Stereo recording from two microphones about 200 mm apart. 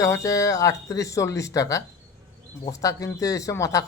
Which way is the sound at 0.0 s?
15° left (ahead or behind).